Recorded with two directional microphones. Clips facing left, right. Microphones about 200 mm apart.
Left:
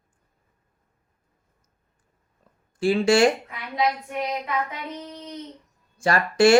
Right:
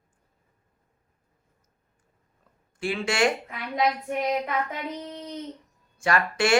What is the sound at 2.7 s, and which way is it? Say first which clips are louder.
Speech: left 8 dB; 35° left (ahead or behind).